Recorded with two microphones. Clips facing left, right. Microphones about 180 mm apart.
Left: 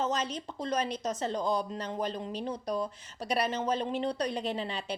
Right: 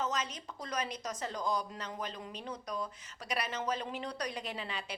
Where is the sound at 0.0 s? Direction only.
30° left (ahead or behind).